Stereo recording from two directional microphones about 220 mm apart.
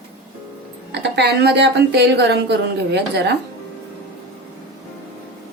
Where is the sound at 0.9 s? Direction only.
50° right (ahead or behind).